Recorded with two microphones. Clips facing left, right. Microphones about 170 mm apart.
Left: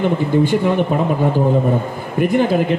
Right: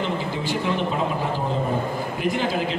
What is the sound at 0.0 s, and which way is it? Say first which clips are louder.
Speech: left 10 dB; 55° left (ahead or behind).